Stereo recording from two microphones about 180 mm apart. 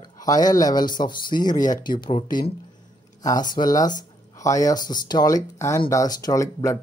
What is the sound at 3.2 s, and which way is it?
Speech, 20° left (ahead or behind).